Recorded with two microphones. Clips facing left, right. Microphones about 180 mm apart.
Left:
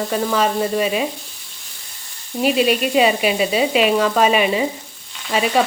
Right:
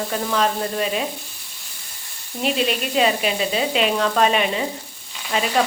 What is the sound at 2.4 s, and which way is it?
Sizzle, 5° left (ahead or behind).